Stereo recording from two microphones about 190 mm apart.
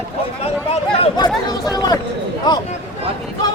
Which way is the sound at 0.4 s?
30° left (ahead or behind).